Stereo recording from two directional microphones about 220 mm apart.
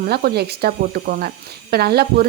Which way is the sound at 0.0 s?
45° right (ahead or behind).